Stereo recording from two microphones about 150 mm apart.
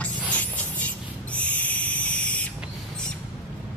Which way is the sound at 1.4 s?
10° left (ahead or behind).